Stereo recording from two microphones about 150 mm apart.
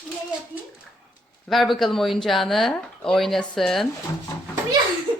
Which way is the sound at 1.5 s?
Centre (ahead or behind).